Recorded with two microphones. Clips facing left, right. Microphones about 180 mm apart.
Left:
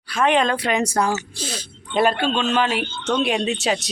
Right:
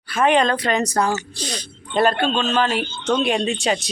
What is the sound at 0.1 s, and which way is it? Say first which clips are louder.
Speech: right 1 dB; centre (ahead or behind).